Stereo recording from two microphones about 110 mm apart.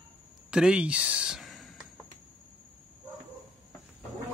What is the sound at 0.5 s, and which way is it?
Speech, 10° right (ahead or behind).